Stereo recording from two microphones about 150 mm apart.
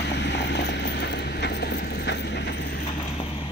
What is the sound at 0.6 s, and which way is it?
Vehicle, 90° left.